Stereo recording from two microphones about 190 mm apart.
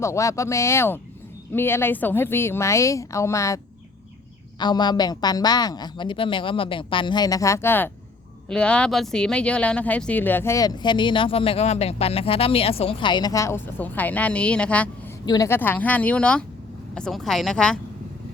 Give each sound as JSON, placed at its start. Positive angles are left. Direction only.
{"t": 0.0, "sound": "speech", "side_deg": 15}
{"t": 4.6, "sound": "a woman's voice", "side_deg": 20}